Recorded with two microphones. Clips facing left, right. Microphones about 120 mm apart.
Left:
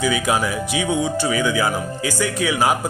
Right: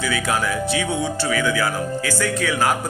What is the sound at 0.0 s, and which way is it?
Speech, 15° left (ahead or behind).